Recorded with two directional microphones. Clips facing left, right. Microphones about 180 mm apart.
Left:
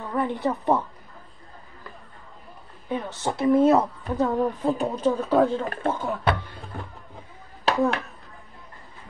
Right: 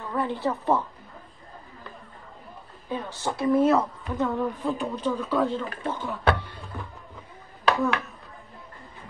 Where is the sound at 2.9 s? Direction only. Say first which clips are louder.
Left 2 dB; 20° left (ahead or behind); by 5.9 s 50° left (ahead or behind).